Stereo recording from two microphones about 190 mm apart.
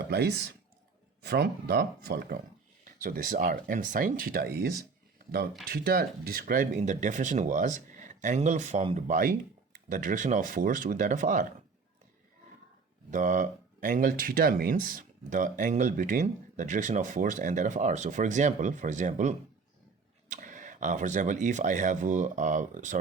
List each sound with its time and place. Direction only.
0.0 s speech: 60° right (ahead or behind)
2.8 s speech: 45° right (ahead or behind)
9.0 s speech: 45° right (ahead or behind)
13.1 s speech: 40° right (ahead or behind)